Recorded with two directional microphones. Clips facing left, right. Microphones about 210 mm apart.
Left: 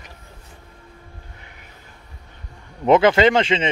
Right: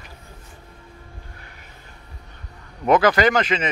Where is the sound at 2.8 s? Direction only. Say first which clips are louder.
Left 3 dB; 25° left (ahead or behind).